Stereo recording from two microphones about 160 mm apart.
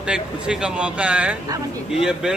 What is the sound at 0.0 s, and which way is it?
Speech, 5° right (ahead or behind).